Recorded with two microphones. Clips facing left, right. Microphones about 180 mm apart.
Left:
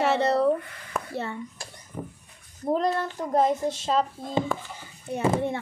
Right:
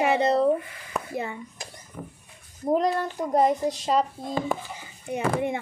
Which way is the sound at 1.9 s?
25° left (ahead or behind).